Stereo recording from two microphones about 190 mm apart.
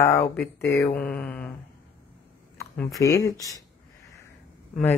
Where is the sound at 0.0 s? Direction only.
15° left (ahead or behind).